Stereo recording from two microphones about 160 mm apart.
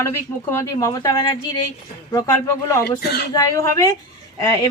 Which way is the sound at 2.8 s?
85° left.